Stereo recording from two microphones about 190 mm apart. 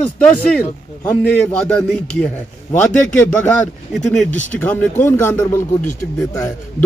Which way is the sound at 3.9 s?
Centre (ahead or behind).